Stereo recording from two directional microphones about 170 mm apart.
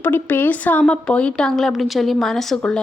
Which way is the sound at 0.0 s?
10° left (ahead or behind).